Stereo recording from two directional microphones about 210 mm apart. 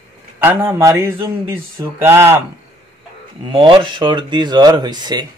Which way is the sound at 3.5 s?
25° right (ahead or behind).